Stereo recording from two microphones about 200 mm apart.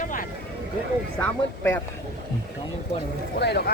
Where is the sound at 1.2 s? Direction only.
10° left (ahead or behind).